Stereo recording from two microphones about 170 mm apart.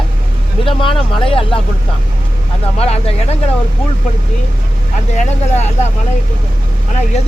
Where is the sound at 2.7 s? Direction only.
35° left (ahead or behind).